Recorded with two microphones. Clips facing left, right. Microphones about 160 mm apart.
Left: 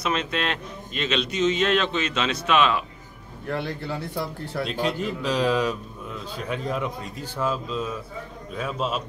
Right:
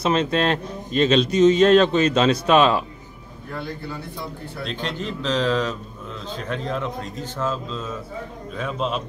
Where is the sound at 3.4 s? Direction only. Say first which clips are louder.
Left 3 dB; 75° left (ahead or behind).